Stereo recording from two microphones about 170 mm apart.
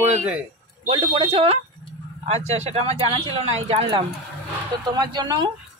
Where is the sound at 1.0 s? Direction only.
30° right (ahead or behind).